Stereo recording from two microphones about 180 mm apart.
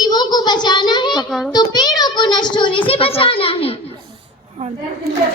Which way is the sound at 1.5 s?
25° left (ahead or behind).